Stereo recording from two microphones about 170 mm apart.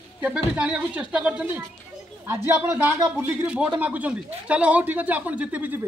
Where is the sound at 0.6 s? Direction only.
10° right (ahead or behind).